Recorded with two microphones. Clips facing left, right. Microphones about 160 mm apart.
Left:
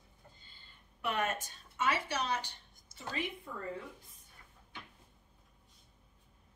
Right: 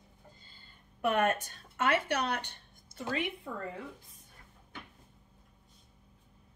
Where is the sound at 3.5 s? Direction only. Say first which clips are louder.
Right 4 dB; 90° right.